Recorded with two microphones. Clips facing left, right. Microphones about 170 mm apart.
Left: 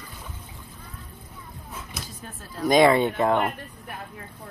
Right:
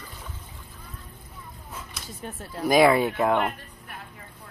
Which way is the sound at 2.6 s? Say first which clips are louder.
Left 1 dB; 5° right (ahead or behind).